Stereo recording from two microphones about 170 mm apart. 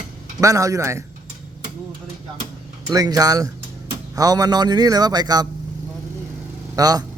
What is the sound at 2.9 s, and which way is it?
A man's voice, 20° right (ahead or behind).